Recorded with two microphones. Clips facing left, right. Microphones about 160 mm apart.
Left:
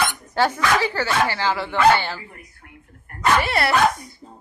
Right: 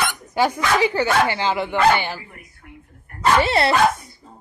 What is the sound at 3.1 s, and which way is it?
Dog, 25° right (ahead or behind).